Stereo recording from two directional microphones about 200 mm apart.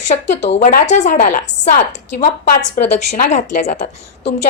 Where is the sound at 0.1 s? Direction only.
40° left (ahead or behind).